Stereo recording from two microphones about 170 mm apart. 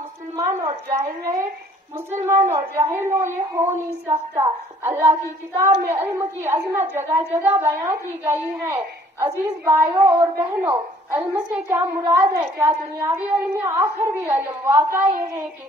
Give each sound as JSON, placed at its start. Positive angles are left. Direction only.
{"t": 0.4, "sound": "a woman's voice", "side_deg": -20}